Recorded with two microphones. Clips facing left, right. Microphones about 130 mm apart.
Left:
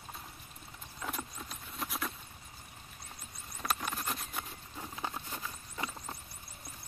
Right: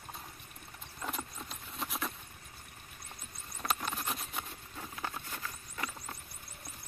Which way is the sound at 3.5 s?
Centre (ahead or behind).